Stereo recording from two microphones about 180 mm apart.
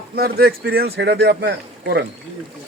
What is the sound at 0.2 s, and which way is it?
Speech, 60° right (ahead or behind).